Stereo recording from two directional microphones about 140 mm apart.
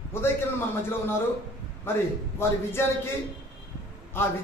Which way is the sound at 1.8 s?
15° left (ahead or behind).